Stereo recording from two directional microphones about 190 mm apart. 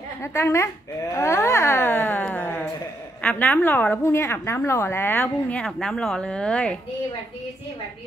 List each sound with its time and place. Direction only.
0.2 s a woman's voice: 15° left (ahead or behind)